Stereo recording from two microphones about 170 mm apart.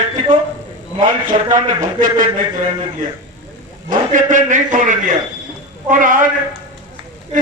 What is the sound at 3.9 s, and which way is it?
A man's voice, 50° right (ahead or behind).